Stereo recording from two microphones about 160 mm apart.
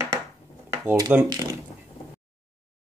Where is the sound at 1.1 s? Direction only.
10° right (ahead or behind).